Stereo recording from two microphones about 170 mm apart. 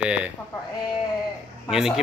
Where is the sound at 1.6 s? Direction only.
5° right (ahead or behind).